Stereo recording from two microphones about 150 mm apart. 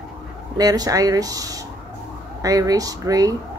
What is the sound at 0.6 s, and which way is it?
A woman's voice, 25° right (ahead or behind).